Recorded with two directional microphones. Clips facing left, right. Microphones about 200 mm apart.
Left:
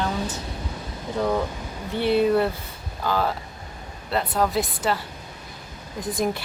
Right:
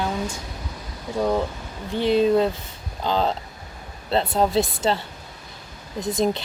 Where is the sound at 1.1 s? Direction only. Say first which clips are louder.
Right 2 dB; 15° right (ahead or behind).